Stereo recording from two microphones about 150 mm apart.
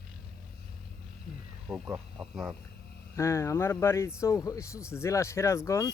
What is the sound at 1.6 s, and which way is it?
Speech, centre (ahead or behind).